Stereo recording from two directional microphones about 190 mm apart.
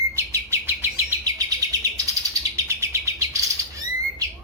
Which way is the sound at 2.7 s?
15° right (ahead or behind).